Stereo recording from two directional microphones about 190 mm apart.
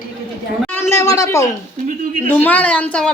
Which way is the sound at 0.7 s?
15° left (ahead or behind).